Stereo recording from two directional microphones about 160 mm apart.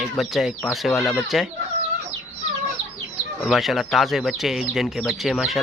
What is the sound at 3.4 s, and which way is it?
Speech, centre (ahead or behind).